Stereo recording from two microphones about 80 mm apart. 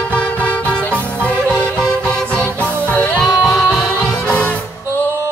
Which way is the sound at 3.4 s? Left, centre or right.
Centre.